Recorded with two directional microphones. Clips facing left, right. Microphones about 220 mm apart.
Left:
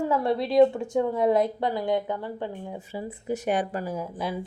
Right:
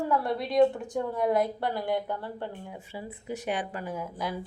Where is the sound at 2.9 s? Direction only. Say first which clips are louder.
Left 6 dB; 40° left (ahead or behind).